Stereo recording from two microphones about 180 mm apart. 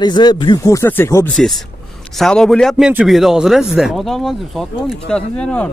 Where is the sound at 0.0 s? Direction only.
25° left (ahead or behind).